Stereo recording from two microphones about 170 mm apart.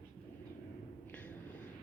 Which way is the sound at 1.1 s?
10° left (ahead or behind).